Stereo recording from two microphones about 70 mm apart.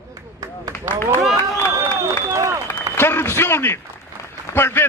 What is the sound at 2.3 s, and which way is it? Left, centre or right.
Speech, right.